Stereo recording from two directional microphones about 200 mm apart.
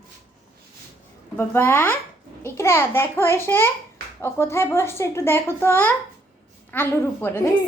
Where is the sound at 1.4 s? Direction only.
10° left (ahead or behind).